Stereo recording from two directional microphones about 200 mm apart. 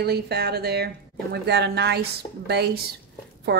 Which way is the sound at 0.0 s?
55° right (ahead or behind).